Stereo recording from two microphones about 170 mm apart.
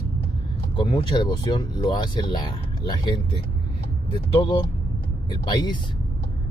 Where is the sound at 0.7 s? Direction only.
30° left (ahead or behind).